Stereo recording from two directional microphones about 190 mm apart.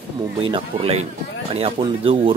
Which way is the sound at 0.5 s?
30° right (ahead or behind).